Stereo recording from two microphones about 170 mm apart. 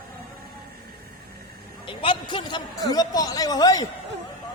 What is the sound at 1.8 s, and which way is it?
A man's voice, 30° left (ahead or behind).